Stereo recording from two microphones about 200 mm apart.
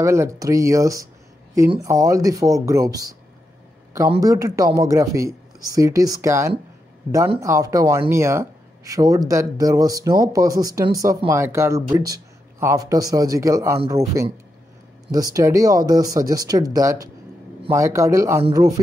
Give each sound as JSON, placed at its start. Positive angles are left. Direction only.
{"t": 0.0, "sound": "speech", "side_deg": -15}
{"t": 4.2, "sound": "speech", "side_deg": -15}